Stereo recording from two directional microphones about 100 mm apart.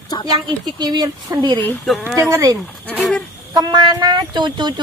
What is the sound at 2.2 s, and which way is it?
Speech, 30° right (ahead or behind).